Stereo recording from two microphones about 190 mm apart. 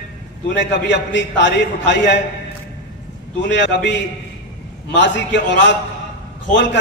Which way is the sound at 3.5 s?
70° left (ahead or behind).